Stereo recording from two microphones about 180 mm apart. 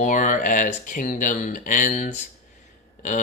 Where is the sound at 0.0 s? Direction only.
45° left (ahead or behind).